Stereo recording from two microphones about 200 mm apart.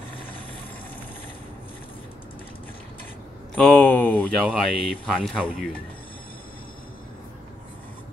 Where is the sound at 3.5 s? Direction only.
5° left (ahead or behind).